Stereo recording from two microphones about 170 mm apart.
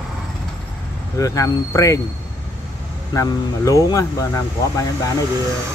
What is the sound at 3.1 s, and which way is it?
Speech, 20° left (ahead or behind).